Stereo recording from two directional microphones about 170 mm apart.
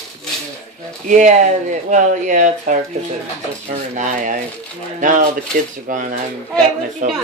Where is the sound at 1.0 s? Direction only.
45° right (ahead or behind).